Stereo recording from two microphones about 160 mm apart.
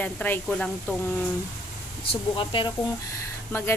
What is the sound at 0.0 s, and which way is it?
Speech, 10° left (ahead or behind).